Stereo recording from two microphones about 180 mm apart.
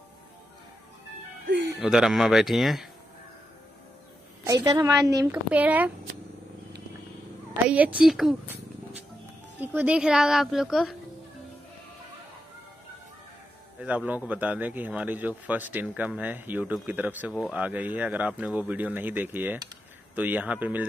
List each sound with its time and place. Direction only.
1.8 s speech: 5° right (ahead or behind)
4.5 s speech: 20° right (ahead or behind)
7.6 s speech: 10° right (ahead or behind)
13.7 s speech: 10° right (ahead or behind)